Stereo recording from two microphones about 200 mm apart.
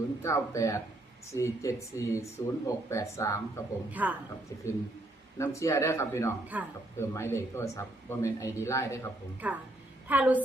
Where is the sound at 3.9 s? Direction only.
10° right (ahead or behind).